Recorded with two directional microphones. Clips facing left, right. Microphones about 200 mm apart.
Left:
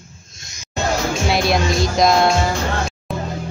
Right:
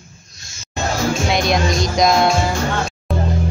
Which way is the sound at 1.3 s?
5° left (ahead or behind).